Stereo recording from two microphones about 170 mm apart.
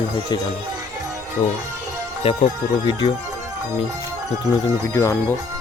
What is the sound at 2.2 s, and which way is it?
Speech, 35° left (ahead or behind).